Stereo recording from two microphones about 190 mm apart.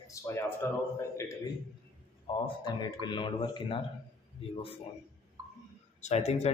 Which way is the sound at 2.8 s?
25° left (ahead or behind).